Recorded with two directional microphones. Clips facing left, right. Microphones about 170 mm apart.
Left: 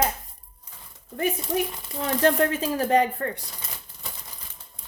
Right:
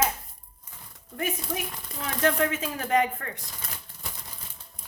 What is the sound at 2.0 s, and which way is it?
Speech, 35° left (ahead or behind).